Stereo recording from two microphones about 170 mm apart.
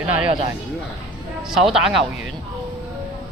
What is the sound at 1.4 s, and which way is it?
Speech, centre (ahead or behind).